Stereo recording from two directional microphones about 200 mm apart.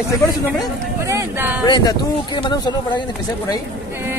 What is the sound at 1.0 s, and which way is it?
Speech, 15° right (ahead or behind).